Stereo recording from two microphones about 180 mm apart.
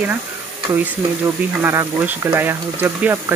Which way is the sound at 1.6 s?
15° right (ahead or behind).